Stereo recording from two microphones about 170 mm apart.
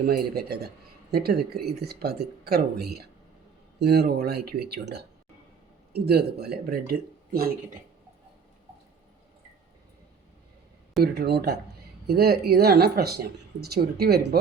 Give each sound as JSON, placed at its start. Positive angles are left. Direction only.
{"t": 0.0, "sound": "speech", "side_deg": -65}
{"t": 11.0, "sound": "speech", "side_deg": -70}